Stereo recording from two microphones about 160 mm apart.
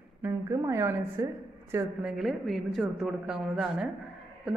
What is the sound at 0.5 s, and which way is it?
A man's voice, 20° right (ahead or behind).